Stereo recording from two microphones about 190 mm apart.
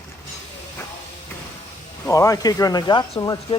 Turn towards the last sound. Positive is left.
turn(degrees=20)  # may be behind; listen again after turning